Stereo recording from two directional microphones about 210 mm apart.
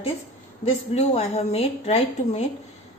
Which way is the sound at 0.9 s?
30° left (ahead or behind).